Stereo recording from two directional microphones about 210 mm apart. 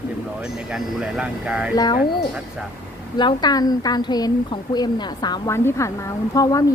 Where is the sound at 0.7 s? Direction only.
5° right (ahead or behind).